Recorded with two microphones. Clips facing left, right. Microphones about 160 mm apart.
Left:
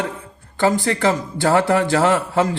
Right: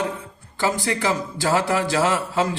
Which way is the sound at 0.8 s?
55° left (ahead or behind).